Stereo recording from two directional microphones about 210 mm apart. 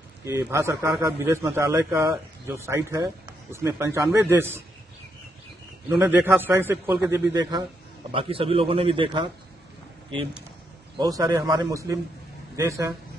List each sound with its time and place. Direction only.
0.2 s a man's voice: 15° right (ahead or behind)
5.9 s a man's voice: 10° right (ahead or behind)
8.1 s a man's voice: 25° right (ahead or behind)
11.0 s a man's voice: 20° right (ahead or behind)